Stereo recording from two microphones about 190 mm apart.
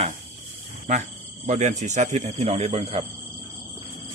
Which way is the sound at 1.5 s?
40° right (ahead or behind).